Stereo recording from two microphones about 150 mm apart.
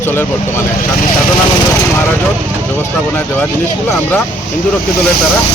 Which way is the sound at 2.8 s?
15° left (ahead or behind).